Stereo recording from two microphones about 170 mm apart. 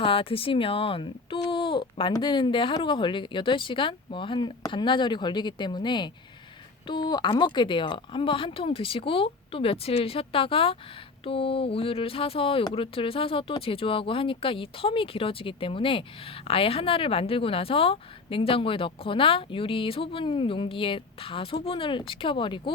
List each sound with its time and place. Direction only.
0.0 s speech: 30° left (ahead or behind)